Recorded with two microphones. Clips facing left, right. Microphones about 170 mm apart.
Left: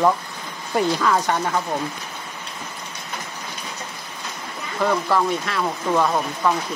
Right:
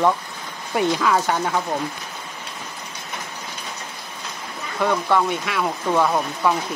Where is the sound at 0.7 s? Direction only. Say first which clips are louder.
Even; centre (ahead or behind).